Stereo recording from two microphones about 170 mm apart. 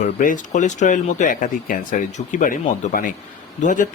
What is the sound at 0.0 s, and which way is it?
Speech, 50° left (ahead or behind).